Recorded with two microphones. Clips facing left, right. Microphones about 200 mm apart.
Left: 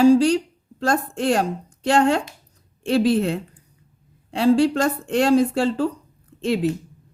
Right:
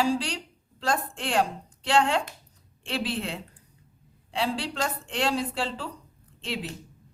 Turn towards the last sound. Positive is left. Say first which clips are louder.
# left 12 dB
turn(degrees=45)  # may be behind; listen again after turning